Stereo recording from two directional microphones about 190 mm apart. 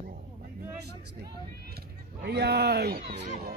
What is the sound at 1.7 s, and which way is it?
Speech, 55° right (ahead or behind).